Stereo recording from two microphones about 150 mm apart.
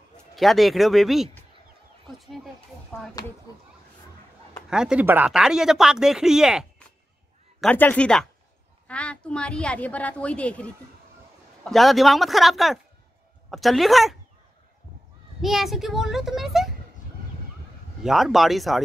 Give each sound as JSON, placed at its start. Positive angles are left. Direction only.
{"t": 0.4, "sound": "speech", "side_deg": 0}
{"t": 3.5, "sound": "speech", "side_deg": 25}
{"t": 4.6, "sound": "speech", "side_deg": -5}
{"t": 7.7, "sound": "a woman's voice", "side_deg": 10}
{"t": 15.4, "sound": "speech", "side_deg": 0}
{"t": 18.0, "sound": "speech", "side_deg": 0}